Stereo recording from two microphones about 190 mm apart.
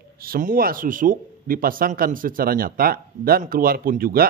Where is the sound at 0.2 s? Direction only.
50° right (ahead or behind).